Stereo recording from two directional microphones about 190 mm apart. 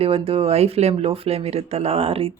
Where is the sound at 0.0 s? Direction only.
30° right (ahead or behind).